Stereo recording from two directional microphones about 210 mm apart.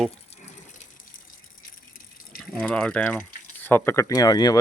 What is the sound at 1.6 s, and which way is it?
Gush, 40° left (ahead or behind).